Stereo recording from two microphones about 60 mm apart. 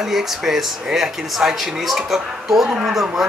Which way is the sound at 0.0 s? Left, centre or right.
Centre.